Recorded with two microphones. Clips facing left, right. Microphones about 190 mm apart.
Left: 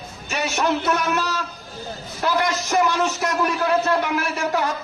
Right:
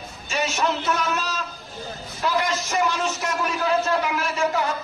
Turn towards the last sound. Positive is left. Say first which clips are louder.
# left 1 dB
turn(degrees=70)  # may be behind; listen again after turning